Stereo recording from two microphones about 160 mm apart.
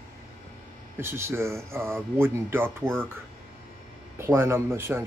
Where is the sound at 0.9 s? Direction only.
15° right (ahead or behind).